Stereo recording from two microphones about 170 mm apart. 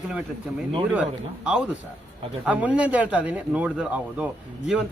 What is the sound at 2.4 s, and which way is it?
Speech, 10° right (ahead or behind).